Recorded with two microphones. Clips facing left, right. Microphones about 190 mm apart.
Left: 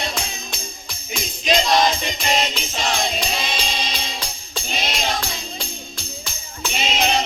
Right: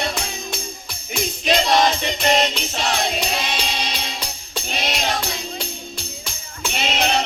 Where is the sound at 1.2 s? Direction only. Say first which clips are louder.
Right 1 dB; 60° right (ahead or behind).